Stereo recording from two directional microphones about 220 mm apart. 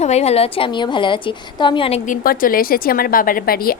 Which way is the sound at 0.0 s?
30° left (ahead or behind).